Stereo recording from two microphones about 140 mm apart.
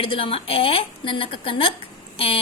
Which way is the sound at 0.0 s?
40° left (ahead or behind).